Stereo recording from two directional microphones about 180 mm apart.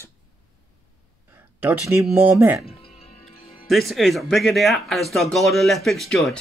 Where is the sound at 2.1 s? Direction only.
10° right (ahead or behind).